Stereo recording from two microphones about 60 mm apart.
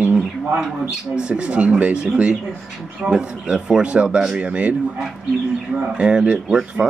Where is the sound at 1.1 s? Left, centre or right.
Centre.